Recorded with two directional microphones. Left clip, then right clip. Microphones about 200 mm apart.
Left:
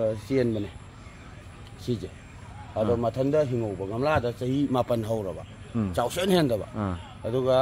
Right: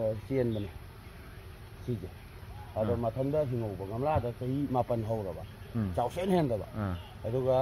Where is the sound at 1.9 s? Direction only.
5° left (ahead or behind).